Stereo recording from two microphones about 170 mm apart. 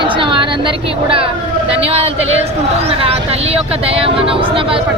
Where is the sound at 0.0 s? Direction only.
30° right (ahead or behind).